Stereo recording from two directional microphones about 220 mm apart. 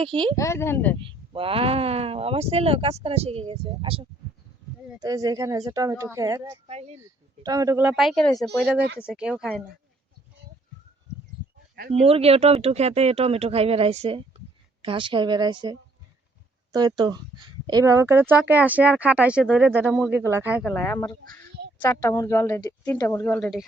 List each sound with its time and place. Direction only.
0.0 s speech: 25° right (ahead or behind)
0.3 s speech: 15° left (ahead or behind)
0.9 s speech: 25° right (ahead or behind)
6.7 s speech: 30° right (ahead or behind)
7.4 s speech: 15° right (ahead or behind); by 9.7 s 5° left (ahead or behind)
11.9 s speech: 25° right (ahead or behind); by 20.7 s 5° right (ahead or behind)
20.7 s speech: 10° left (ahead or behind)